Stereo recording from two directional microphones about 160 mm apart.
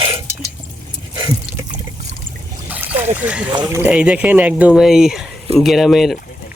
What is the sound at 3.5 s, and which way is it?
Speech, 25° right (ahead or behind).